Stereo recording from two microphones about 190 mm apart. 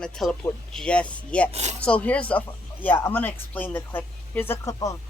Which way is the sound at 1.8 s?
5° left (ahead or behind).